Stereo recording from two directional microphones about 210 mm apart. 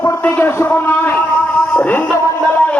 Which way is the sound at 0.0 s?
10° left (ahead or behind).